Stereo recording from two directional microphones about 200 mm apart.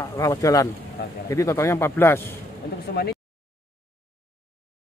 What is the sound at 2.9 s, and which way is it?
Speech, 50° left (ahead or behind).